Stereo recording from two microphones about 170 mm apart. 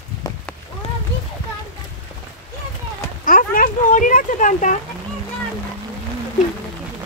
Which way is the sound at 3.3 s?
55° left (ahead or behind).